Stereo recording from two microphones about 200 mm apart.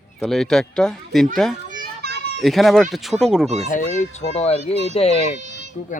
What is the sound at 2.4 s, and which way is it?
A man's voice, centre (ahead or behind).